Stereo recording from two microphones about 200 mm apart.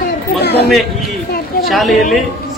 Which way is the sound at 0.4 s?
55° left (ahead or behind).